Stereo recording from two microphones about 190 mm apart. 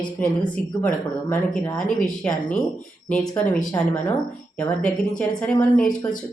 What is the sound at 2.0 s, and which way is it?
Speech, 5° left (ahead or behind).